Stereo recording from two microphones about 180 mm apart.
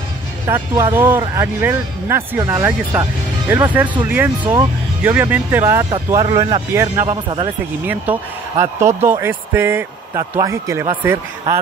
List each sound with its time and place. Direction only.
0.5 s speech: 15° right (ahead or behind)
6.7 s speech: 15° right (ahead or behind)
7.1 s speech: 30° right (ahead or behind)
7.8 s speech: 10° right (ahead or behind)